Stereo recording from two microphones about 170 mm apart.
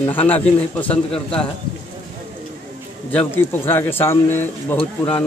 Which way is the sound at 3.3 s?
10° left (ahead or behind).